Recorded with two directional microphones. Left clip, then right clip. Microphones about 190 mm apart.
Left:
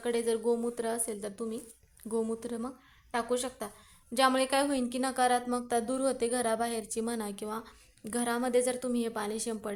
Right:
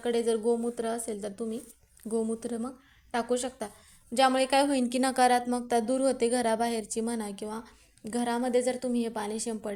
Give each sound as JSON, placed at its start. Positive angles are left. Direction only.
{"t": 0.0, "sound": "speech", "side_deg": -5}